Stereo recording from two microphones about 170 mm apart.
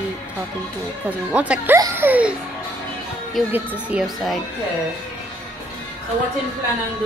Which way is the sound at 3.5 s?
10° right (ahead or behind).